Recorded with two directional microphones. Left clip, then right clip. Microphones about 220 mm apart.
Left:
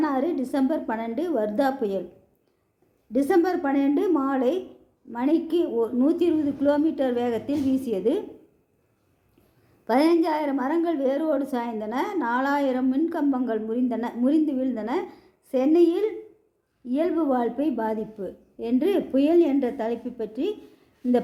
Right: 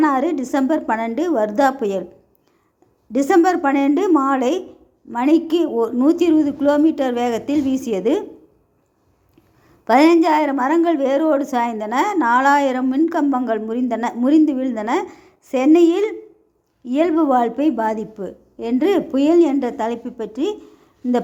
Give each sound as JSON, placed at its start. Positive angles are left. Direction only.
{"t": 0.0, "sound": "a woman's voice", "side_deg": -25}
{"t": 3.1, "sound": "a woman's voice", "side_deg": -25}
{"t": 9.8, "sound": "a woman's voice", "side_deg": -25}